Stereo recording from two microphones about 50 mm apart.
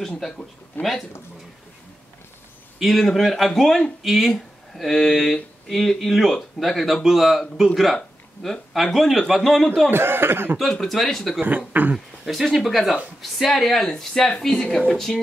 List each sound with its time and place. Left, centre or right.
0.8 s speech: left
2.8 s speech: centre
9.8 s speech: right
10.6 s speech: centre
11.4 s speech: right
12.3 s speech: centre